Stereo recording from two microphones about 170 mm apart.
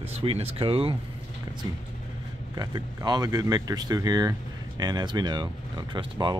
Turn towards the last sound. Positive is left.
turn(degrees=-25)  # may be behind; listen again after turning